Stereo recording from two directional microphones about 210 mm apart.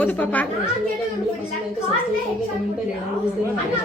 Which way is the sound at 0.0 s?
5° left (ahead or behind).